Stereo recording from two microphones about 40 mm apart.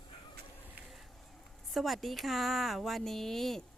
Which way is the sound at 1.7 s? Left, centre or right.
Centre.